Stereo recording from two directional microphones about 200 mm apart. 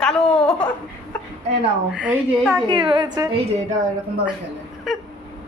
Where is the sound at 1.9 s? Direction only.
5° right (ahead or behind).